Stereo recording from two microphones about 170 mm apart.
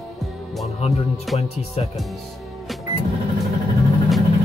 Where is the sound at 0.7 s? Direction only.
35° left (ahead or behind).